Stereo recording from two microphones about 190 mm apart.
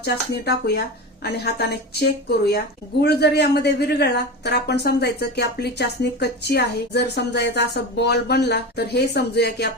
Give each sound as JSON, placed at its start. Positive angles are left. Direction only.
{"t": 0.0, "sound": "speech", "side_deg": 60}